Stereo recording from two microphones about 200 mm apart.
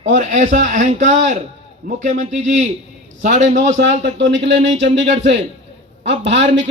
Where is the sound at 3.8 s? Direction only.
60° right (ahead or behind).